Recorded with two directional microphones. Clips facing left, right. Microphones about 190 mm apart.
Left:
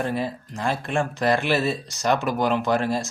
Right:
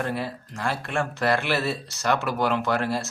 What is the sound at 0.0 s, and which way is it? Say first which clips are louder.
Speech: left 3 dB; 15° left (ahead or behind).